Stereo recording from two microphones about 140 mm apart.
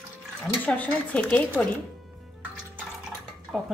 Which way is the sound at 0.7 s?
10° left (ahead or behind).